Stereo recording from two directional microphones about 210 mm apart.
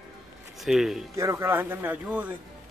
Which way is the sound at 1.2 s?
15° right (ahead or behind).